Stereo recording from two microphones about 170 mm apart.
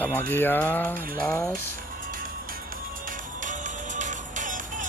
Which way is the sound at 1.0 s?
55° right (ahead or behind).